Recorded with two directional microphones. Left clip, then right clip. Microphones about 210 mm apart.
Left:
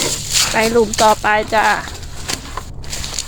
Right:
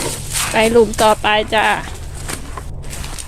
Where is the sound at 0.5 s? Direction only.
15° right (ahead or behind).